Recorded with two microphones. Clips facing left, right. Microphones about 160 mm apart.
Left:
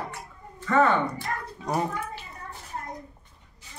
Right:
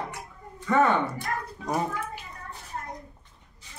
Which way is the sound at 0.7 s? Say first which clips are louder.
Even; 15° right (ahead or behind).